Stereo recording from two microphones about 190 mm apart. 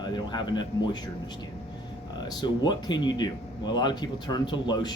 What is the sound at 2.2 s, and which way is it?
Speech, 20° left (ahead or behind).